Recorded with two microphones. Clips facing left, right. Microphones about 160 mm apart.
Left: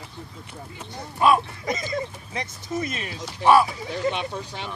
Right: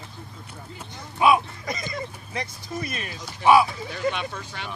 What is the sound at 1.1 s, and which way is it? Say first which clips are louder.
Speech: even; 5° right (ahead or behind).